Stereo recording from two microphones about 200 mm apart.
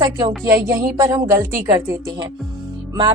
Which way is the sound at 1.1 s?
15° right (ahead or behind).